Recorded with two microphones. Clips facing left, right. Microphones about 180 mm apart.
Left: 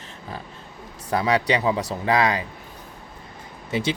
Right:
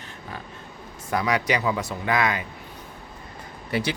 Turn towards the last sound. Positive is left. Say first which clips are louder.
# left 1 dB
turn(degrees=25)  # may be behind; listen again after turning